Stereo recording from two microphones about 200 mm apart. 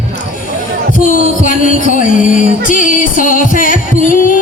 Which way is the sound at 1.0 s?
40° left (ahead or behind).